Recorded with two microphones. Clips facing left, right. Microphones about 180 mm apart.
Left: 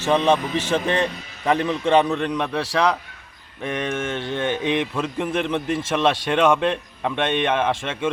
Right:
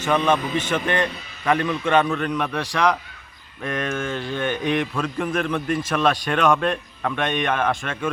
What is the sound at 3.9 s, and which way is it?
A man's voice, 25° left (ahead or behind).